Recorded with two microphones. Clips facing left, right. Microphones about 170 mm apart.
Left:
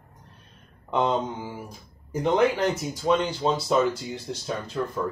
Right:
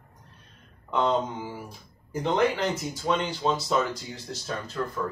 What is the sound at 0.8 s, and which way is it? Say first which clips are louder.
Mantra: left 1 dB; 15° left (ahead or behind).